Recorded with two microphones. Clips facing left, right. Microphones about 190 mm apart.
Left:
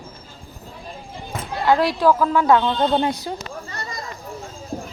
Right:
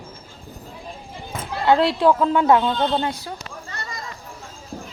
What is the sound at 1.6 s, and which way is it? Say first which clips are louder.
Speech: even; 25° right (ahead or behind).